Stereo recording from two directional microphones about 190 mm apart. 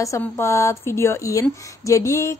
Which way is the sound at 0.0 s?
15° left (ahead or behind).